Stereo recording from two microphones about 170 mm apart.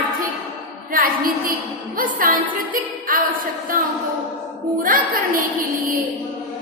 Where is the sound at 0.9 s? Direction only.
55° right (ahead or behind).